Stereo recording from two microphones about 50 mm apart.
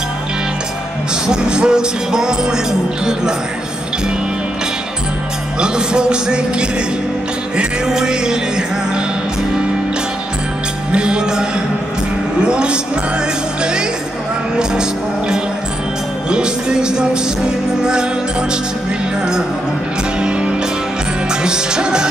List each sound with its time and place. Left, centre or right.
1.2 s music: centre
5.6 s music: centre
7.5 s music: centre
10.9 s music: centre
12.4 s a man's voice: centre
14.6 s music: centre
20.2 s music: right